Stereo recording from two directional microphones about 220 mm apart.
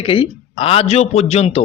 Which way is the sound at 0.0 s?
25° left (ahead or behind).